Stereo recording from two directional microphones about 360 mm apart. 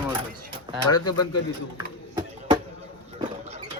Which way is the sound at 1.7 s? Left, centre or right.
Centre.